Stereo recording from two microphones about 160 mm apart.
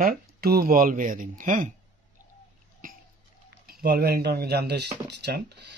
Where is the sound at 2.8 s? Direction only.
60° right (ahead or behind).